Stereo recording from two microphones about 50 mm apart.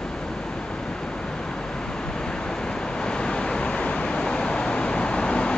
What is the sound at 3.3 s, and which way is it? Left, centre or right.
Vehicle, centre.